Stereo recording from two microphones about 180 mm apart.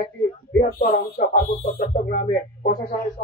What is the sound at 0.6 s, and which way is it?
Speech, 50° left (ahead or behind).